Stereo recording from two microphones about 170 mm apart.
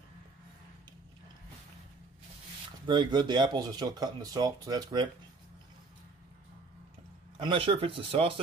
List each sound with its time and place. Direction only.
2.9 s speech: 25° right (ahead or behind)
7.3 s speech: 30° right (ahead or behind)